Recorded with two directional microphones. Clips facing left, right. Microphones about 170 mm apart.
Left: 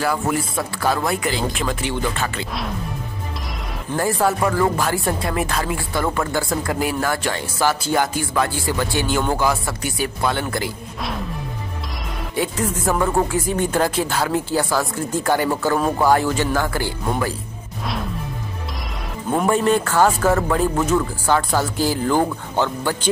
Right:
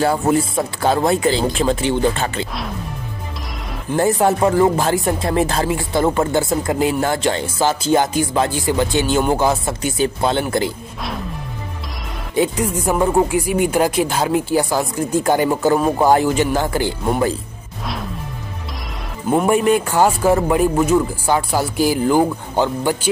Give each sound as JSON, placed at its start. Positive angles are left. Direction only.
{"t": 0.0, "sound": "speech", "side_deg": -25}
{"t": 3.9, "sound": "speech", "side_deg": -25}
{"t": 12.4, "sound": "speech", "side_deg": -15}
{"t": 19.3, "sound": "speech", "side_deg": -10}